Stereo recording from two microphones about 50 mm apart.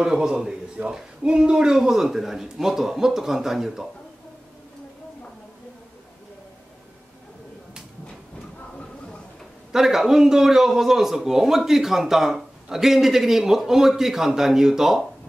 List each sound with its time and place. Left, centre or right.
0.0 s a man's voice: centre
0.8 s speech: right
1.2 s a man's voice: centre
9.7 s a man's voice: centre